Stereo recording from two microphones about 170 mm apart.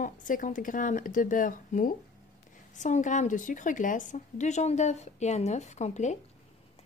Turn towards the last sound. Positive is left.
turn(degrees=45)  # may be behind; listen again after turning